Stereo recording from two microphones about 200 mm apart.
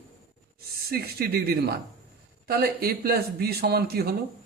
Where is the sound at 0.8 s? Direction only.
50° right (ahead or behind).